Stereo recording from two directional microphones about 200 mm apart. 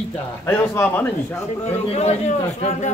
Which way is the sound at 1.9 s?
30° left (ahead or behind).